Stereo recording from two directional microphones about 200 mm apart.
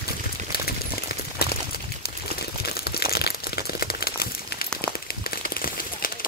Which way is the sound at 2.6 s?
50° left (ahead or behind).